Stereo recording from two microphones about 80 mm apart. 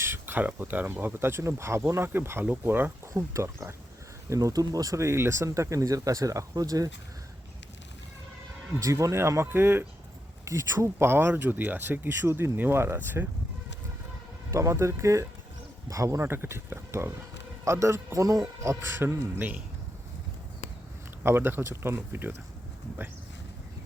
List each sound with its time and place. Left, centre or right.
0.0 s a man's voice: right
3.1 s a man's voice: right
8.8 s a man's voice: right
14.5 s a man's voice: right
16.3 s a man's voice: right
18.9 s speech: right
19.4 s speech: centre
21.2 s speech: right